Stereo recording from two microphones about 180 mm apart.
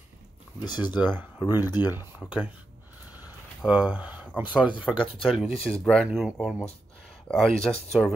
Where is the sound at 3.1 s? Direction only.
5° right (ahead or behind).